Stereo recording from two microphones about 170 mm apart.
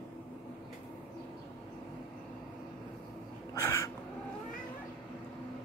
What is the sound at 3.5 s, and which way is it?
Crow, 15° left (ahead or behind).